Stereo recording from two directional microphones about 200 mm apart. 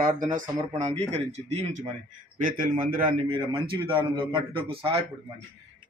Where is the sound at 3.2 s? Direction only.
25° right (ahead or behind).